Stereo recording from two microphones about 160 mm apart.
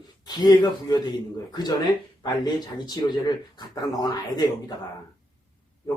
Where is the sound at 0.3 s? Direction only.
25° left (ahead or behind).